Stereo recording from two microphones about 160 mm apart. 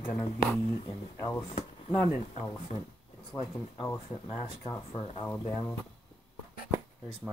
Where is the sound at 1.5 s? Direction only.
35° left (ahead or behind).